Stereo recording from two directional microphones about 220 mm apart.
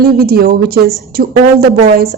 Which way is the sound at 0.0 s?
45° right (ahead or behind).